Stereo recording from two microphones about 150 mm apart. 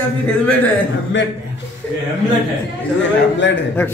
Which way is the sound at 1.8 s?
10° left (ahead or behind).